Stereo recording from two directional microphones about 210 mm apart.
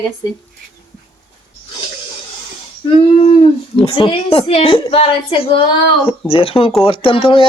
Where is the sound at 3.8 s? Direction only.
25° left (ahead or behind).